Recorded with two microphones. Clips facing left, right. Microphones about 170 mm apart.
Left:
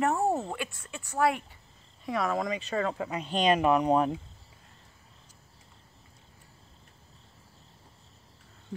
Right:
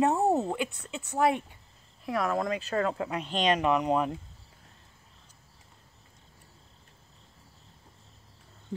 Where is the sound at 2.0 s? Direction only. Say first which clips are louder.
Right 1 dB; centre (ahead or behind).